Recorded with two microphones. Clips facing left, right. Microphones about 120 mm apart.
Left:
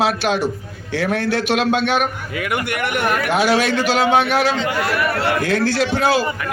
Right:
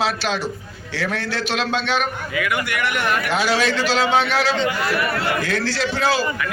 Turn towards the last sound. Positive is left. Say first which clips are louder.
# left 3 dB
turn(degrees=55)  # may be behind; listen again after turning